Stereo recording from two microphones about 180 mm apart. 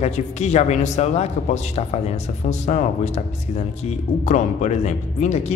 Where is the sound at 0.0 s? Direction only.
40° left (ahead or behind).